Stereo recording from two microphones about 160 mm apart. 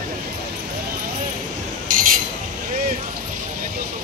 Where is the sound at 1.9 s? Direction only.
55° right (ahead or behind).